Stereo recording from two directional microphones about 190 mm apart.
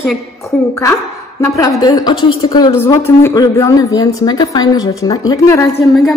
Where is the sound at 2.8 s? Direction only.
15° left (ahead or behind).